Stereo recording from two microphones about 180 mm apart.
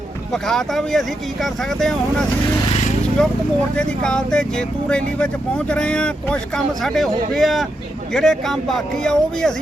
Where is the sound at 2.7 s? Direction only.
35° left (ahead or behind).